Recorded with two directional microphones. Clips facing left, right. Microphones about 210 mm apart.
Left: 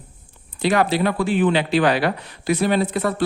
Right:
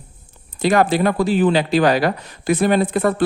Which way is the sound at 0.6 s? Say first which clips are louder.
Right 3 dB; 45° right (ahead or behind).